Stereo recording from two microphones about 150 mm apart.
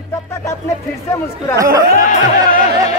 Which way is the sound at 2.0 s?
60° left (ahead or behind).